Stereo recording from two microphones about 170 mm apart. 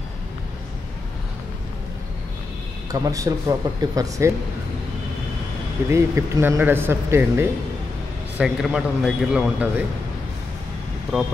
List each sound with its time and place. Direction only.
2.9 s speech: 20° right (ahead or behind)
5.9 s speech: 15° right (ahead or behind)
8.4 s a man's voice: centre (ahead or behind)
11.1 s a man's voice: 5° right (ahead or behind)